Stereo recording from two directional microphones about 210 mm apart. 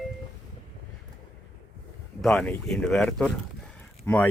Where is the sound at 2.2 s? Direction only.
5° left (ahead or behind).